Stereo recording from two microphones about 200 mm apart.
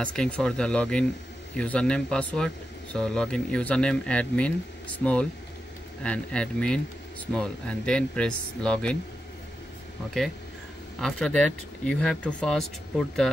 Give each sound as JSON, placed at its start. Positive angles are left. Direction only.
{"t": 0.0, "sound": "speech", "side_deg": 5}
{"t": 11.0, "sound": "speech", "side_deg": 5}